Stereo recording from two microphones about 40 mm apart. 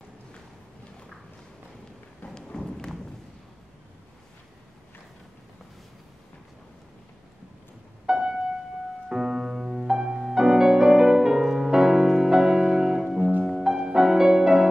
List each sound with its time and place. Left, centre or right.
2.2 s thump: centre
8.1 s music: centre